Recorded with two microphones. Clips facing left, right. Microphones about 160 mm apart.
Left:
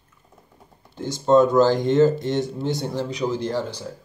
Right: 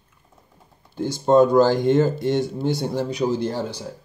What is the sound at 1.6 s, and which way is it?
Speech, 20° left (ahead or behind).